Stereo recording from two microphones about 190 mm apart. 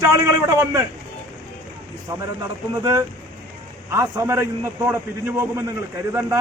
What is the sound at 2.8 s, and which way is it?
A man's voice, 15° right (ahead or behind).